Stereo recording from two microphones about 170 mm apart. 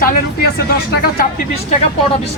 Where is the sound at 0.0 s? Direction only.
60° left (ahead or behind).